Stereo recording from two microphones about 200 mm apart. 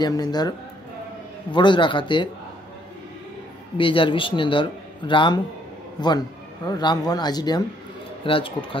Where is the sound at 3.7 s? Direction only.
25° left (ahead or behind).